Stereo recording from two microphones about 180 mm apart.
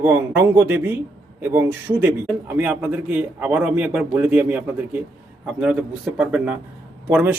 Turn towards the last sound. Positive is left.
turn(degrees=-10)  # may be behind; listen again after turning